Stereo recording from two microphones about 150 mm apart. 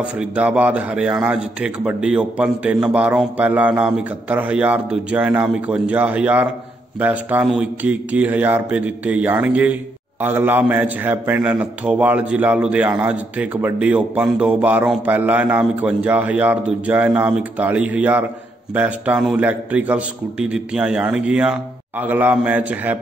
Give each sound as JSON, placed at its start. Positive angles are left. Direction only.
{"t": 0.0, "sound": "a man's voice", "side_deg": -10}